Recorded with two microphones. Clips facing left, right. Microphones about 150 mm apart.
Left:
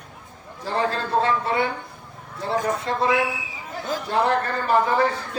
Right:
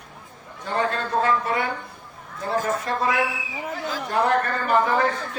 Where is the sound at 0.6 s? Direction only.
30° left (ahead or behind).